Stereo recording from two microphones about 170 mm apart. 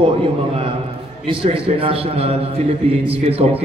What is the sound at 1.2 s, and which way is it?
A man's voice, 30° right (ahead or behind).